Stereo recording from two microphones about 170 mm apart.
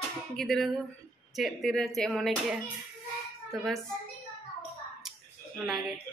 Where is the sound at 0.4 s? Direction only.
5° left (ahead or behind).